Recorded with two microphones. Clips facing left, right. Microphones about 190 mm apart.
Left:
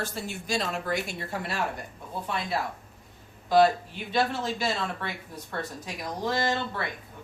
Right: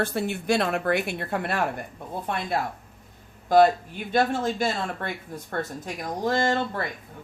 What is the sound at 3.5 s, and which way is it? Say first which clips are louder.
Speech: right 3 dB; 50° right (ahead or behind).